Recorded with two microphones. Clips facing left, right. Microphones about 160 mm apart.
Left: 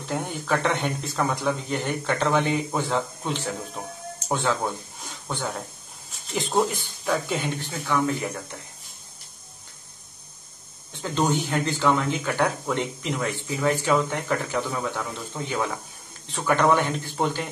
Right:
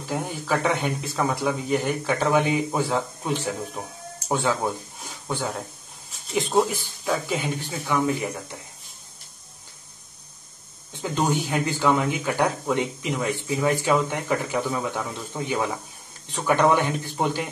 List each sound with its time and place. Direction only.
0.0 s speech: 5° right (ahead or behind)
6.2 s speech: centre (ahead or behind)
7.8 s speech: 15° right (ahead or behind)
10.9 s speech: 15° right (ahead or behind)